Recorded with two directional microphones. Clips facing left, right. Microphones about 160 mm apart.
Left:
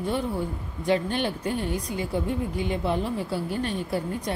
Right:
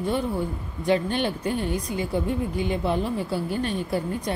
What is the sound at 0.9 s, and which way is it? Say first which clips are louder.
A woman's voice: right 2 dB; 20° right (ahead or behind).